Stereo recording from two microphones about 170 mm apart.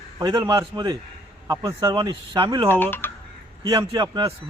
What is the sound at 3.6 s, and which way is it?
Speech, 25° right (ahead or behind).